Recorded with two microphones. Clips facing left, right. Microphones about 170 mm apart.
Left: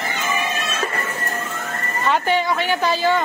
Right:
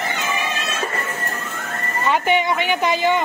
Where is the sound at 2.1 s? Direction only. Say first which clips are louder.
Right 1 dB; 20° right (ahead or behind).